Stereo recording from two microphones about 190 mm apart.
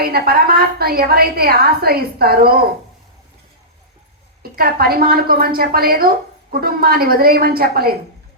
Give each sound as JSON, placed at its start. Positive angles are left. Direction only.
{"t": 0.0, "sound": "a woman's voice", "side_deg": -55}
{"t": 4.5, "sound": "a woman's voice", "side_deg": -50}